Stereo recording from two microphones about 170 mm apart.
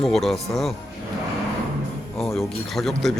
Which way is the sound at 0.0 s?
Centre (ahead or behind).